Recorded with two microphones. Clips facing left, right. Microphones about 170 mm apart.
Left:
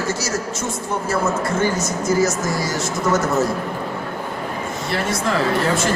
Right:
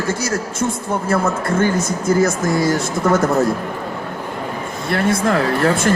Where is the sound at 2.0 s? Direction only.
55° right (ahead or behind).